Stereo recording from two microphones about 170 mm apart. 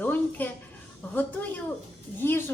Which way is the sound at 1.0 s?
10° left (ahead or behind).